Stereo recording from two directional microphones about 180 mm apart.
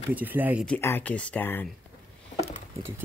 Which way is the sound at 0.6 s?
10° left (ahead or behind).